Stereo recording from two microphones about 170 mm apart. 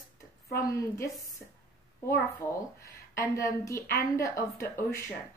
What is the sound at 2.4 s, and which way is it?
Speech, 15° left (ahead or behind).